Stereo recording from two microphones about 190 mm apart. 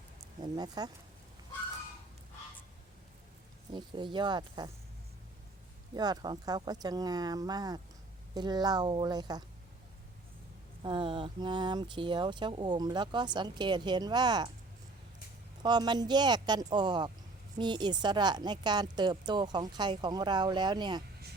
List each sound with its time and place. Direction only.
0.4 s speech: 20° right (ahead or behind)
3.7 s speech: 25° right (ahead or behind)
6.0 s speech: 20° right (ahead or behind)
10.8 s speech: 25° right (ahead or behind)
15.6 s speech: 20° right (ahead or behind)